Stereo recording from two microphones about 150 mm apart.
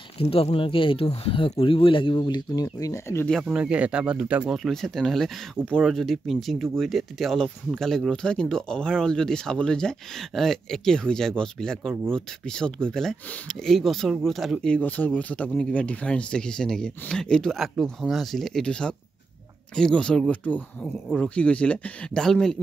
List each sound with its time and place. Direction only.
0.2 s speech: 40° left (ahead or behind); by 3.3 s 20° left (ahead or behind)
3.3 s speech: 5° right (ahead or behind)